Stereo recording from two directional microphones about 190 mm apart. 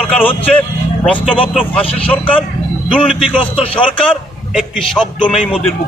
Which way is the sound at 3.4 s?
30° left (ahead or behind).